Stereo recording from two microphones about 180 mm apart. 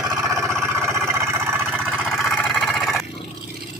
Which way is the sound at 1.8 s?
Centre (ahead or behind).